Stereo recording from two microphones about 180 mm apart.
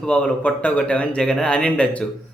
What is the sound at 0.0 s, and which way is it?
A man's voice, 5° left (ahead or behind).